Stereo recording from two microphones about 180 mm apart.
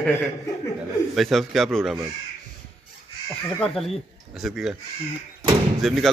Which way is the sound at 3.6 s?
Centre (ahead or behind).